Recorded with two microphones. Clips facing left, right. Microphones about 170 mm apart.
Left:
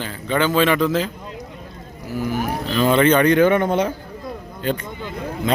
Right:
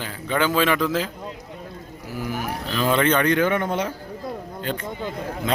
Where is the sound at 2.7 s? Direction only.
Centre (ahead or behind).